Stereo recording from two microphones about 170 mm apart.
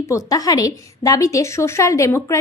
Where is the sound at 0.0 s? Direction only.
20° left (ahead or behind).